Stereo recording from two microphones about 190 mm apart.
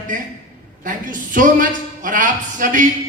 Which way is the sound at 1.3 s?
45° right (ahead or behind).